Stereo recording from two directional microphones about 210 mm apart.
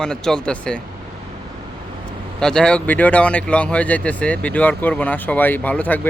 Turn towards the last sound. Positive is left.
turn(degrees=5)  # may be behind; listen again after turning